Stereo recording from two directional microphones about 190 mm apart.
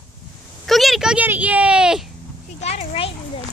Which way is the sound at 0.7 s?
Centre (ahead or behind).